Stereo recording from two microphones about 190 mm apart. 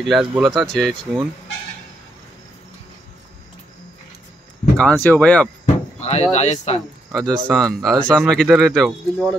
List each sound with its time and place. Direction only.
0.0 s speech: centre (ahead or behind)
4.7 s speech: 5° left (ahead or behind)
5.9 s speech: 35° left (ahead or behind)
7.1 s speech: centre (ahead or behind)